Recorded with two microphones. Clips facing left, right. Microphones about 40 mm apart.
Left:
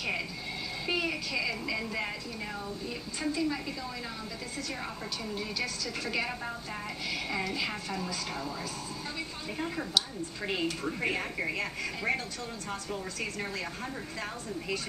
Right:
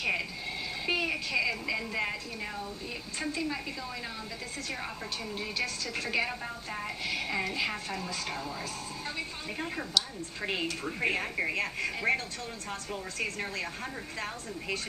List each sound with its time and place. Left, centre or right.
0.8 s a sound: centre
3.2 s a woman's voice: centre
5.3 s a woman's voice: right
6.0 s a woman's voice: centre
10.4 s a woman's voice: centre